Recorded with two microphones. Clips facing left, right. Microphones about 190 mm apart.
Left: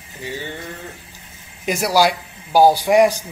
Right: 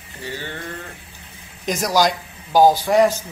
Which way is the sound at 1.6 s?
10° left (ahead or behind).